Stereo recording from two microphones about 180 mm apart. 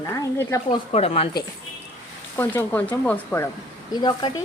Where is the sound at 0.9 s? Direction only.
35° left (ahead or behind).